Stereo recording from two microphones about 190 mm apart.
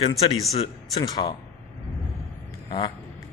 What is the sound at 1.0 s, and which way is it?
Speech, 20° left (ahead or behind).